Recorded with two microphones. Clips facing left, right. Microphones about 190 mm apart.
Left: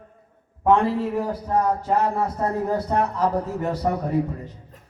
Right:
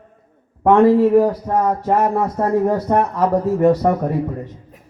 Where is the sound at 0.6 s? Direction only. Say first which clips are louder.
Right 8 dB; 65° right (ahead or behind).